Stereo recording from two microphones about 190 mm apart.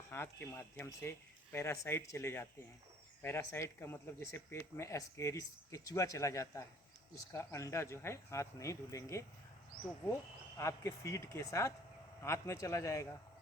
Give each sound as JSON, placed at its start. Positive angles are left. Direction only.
{"t": 0.1, "sound": "speech", "side_deg": 10}
{"t": 10.6, "sound": "speech", "side_deg": 15}